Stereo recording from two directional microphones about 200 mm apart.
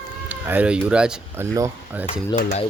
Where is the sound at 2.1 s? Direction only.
30° left (ahead or behind).